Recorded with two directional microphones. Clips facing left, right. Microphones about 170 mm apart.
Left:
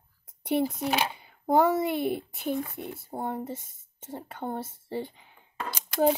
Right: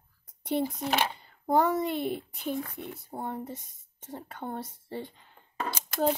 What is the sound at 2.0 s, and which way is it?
Speech, 60° left (ahead or behind).